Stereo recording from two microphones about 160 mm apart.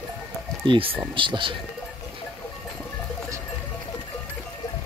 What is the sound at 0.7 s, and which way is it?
Speech, 35° right (ahead or behind).